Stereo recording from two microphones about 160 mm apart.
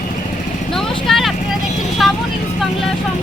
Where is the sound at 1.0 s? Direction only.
Centre (ahead or behind).